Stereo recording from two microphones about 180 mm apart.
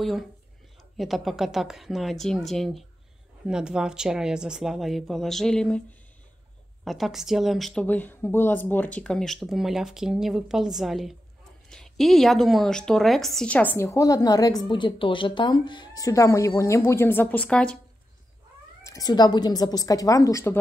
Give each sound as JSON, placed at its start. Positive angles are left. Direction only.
{"t": 0.9, "sound": "speech", "side_deg": 0}
{"t": 18.9, "sound": "speech", "side_deg": 20}